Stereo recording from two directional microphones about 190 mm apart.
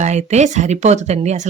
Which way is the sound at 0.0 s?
35° right (ahead or behind).